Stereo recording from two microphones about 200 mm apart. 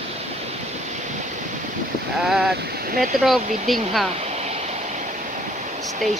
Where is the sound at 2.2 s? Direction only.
Centre (ahead or behind).